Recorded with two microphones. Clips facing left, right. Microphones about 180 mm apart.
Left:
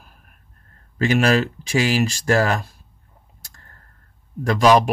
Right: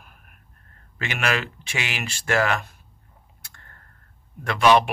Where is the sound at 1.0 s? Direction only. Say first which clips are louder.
Left 9 dB; 35° left (ahead or behind).